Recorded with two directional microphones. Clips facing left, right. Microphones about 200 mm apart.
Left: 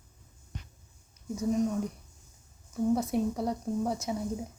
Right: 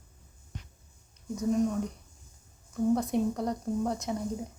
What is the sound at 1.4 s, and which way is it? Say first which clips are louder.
Speech: right 1 dB; centre (ahead or behind).